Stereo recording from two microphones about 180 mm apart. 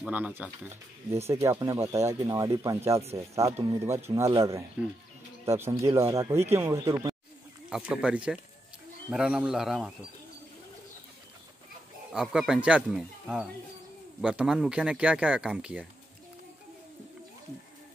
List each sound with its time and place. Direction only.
0.0 s speech: 10° right (ahead or behind)
7.7 s speech: 5° right (ahead or behind)
12.1 s speech: 5° right (ahead or behind)